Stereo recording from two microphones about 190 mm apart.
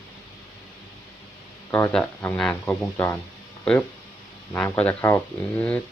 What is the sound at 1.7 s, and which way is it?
Speech, 10° left (ahead or behind).